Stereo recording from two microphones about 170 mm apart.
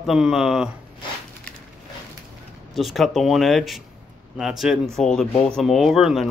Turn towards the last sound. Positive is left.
turn(degrees=0)  # may be behind; listen again after turning